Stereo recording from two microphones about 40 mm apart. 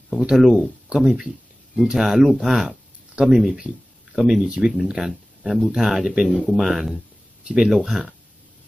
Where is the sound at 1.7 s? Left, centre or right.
Centre.